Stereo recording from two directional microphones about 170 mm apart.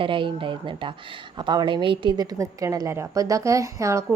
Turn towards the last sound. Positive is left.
turn(degrees=-20)  # may be behind; listen again after turning